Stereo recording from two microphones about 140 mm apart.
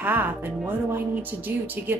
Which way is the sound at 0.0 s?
15° right (ahead or behind).